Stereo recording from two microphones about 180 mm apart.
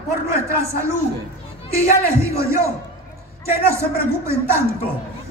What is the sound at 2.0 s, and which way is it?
A man's voice, 15° right (ahead or behind).